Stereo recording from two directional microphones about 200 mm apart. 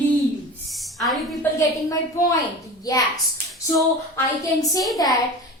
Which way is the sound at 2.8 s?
20° left (ahead or behind).